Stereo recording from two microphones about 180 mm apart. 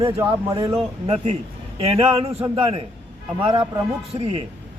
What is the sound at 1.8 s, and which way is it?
Speech, 30° right (ahead or behind).